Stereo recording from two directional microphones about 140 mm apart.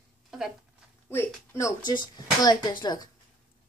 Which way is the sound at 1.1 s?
15° left (ahead or behind).